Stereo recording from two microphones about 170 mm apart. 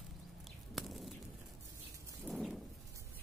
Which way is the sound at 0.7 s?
Centre (ahead or behind).